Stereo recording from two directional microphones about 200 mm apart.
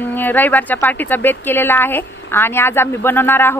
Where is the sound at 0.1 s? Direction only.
10° left (ahead or behind).